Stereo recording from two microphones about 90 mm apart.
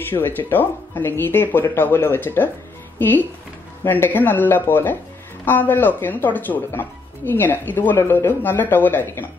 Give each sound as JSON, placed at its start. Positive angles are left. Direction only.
{"t": 0.1, "sound": "speech", "side_deg": 25}